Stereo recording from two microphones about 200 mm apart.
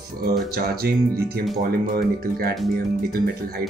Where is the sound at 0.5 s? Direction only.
50° right (ahead or behind).